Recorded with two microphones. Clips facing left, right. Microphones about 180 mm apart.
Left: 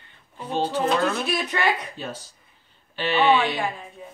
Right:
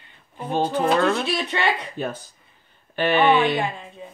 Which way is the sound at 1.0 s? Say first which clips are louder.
Right 3 dB; 30° right (ahead or behind).